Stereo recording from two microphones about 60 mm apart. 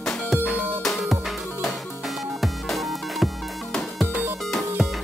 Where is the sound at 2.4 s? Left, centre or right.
Centre.